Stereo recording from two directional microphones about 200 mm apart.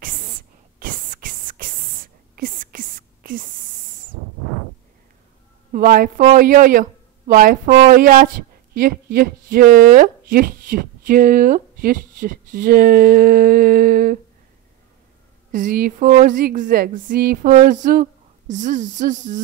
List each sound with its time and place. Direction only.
0.7 s a sound: 45° right (ahead or behind)
5.7 s speech: 45° right (ahead or behind)
15.5 s speech: 45° right (ahead or behind)